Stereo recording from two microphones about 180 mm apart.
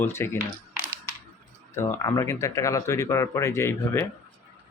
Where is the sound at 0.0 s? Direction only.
15° left (ahead or behind).